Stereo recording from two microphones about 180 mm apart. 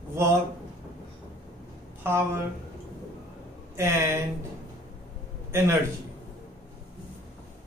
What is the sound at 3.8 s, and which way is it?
Mantra, 15° right (ahead or behind).